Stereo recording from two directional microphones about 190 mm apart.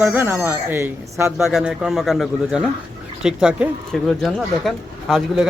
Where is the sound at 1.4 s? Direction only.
Centre (ahead or behind).